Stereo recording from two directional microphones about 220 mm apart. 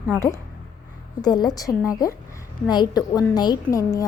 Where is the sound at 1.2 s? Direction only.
20° left (ahead or behind).